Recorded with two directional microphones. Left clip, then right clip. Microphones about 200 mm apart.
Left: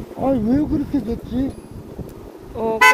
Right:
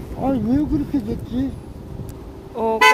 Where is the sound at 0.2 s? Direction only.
35° left (ahead or behind).